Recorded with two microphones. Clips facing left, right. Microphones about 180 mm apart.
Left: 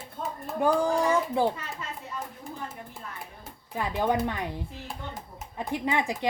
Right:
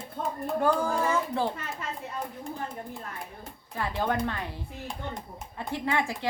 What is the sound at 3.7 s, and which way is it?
Speech, 15° left (ahead or behind).